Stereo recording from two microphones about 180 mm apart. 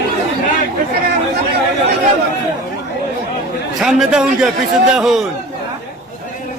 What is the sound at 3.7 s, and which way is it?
A man's voice, centre (ahead or behind).